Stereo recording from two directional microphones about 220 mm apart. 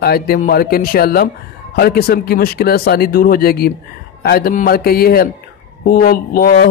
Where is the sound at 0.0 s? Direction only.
45° left (ahead or behind).